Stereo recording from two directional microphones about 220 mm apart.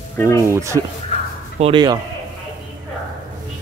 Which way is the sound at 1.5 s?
25° right (ahead or behind).